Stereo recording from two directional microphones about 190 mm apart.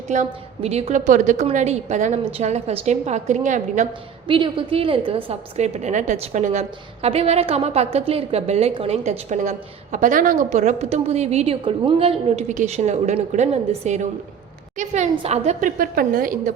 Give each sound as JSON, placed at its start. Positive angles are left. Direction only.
{"t": 0.1, "sound": "a woman's voice", "side_deg": -35}
{"t": 4.3, "sound": "a woman's voice", "side_deg": -25}
{"t": 15.8, "sound": "a woman's voice", "side_deg": -50}